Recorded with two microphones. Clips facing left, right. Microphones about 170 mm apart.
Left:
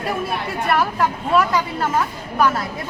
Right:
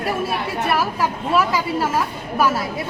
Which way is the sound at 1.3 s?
10° right (ahead or behind).